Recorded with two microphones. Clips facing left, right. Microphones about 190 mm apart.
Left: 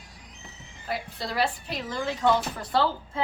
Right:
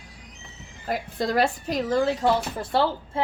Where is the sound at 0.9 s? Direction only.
45° right (ahead or behind); by 2.8 s 30° right (ahead or behind).